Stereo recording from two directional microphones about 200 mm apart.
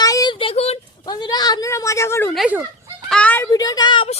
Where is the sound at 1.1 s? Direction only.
20° left (ahead or behind).